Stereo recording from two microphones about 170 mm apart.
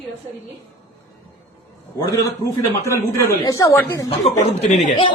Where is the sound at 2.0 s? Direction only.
20° left (ahead or behind).